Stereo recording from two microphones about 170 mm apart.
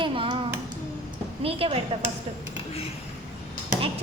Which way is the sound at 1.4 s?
35° right (ahead or behind).